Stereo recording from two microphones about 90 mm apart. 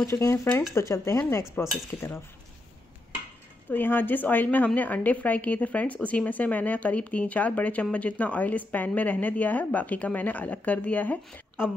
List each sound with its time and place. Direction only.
0.0 s speech: 30° left (ahead or behind)
3.7 s a woman's voice: 20° left (ahead or behind)